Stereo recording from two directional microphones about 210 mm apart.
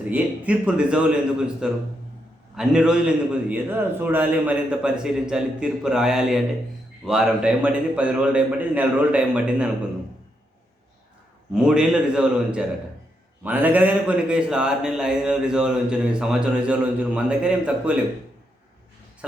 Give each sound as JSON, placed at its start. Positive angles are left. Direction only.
{"t": 0.1, "sound": "a man's voice", "side_deg": -5}
{"t": 11.5, "sound": "a man's voice", "side_deg": -5}